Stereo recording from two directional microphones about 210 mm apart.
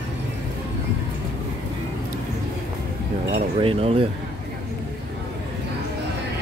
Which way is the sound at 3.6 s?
25° right (ahead or behind).